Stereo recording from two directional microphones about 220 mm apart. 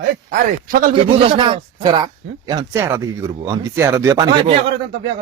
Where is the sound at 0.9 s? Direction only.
25° right (ahead or behind).